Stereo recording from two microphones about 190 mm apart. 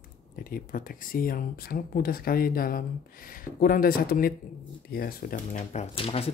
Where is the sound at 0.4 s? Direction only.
50° left (ahead or behind).